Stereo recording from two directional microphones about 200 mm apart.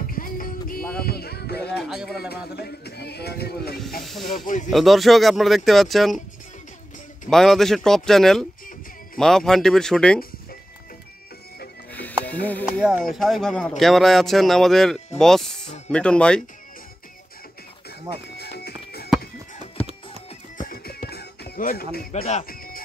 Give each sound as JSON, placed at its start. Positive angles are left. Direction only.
{"t": 0.0, "sound": "music", "side_deg": 45}
{"t": 4.0, "sound": "speech", "side_deg": 0}
{"t": 7.2, "sound": "speech", "side_deg": 0}
{"t": 11.9, "sound": "music", "side_deg": 10}
{"t": 12.3, "sound": "speech", "side_deg": 10}
{"t": 18.1, "sound": "music", "side_deg": 55}
{"t": 20.5, "sound": "music", "side_deg": 45}
{"t": 22.1, "sound": "speech", "side_deg": 30}
{"t": 22.5, "sound": "music", "side_deg": 45}